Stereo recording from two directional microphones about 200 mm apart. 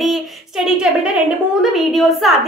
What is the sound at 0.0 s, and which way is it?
A woman's voice, centre (ahead or behind).